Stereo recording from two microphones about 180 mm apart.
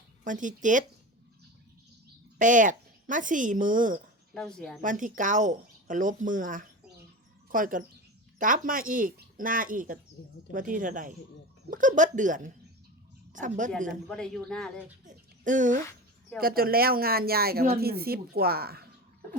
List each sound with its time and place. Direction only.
0.3 s speech: 45° right (ahead or behind)
2.4 s speech: 45° right (ahead or behind)
4.4 s speech: 5° left (ahead or behind)
4.8 s speech: 45° right (ahead or behind)
14.1 s speech: 5° left (ahead or behind)
15.0 s a sound: 45° right (ahead or behind)
16.4 s speech: 55° right (ahead or behind)